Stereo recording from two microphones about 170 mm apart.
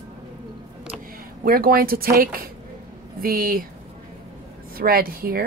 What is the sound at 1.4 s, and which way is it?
A woman's voice, 60° right (ahead or behind).